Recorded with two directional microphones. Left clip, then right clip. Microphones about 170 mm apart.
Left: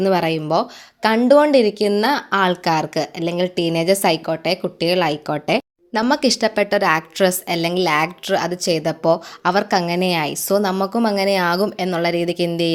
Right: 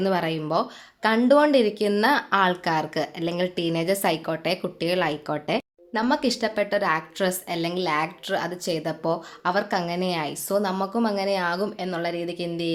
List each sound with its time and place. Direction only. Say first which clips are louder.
0.0 s a woman's voice: left 7 dB; 30° left (ahead or behind)
5.9 s a woman's voice: left 6 dB; 40° left (ahead or behind)